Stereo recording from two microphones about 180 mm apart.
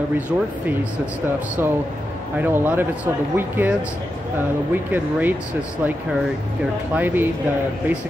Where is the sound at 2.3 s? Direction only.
10° right (ahead or behind).